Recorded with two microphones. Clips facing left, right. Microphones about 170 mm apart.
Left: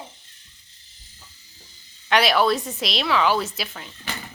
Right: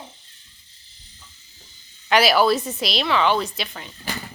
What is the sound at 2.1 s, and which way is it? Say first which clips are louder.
A woman's voice: right 2 dB; centre (ahead or behind).